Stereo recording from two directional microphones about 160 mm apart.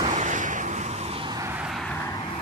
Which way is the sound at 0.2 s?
50° right (ahead or behind).